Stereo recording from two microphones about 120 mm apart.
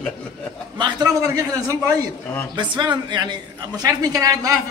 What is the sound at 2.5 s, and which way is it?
A woman's voice, 40° right (ahead or behind).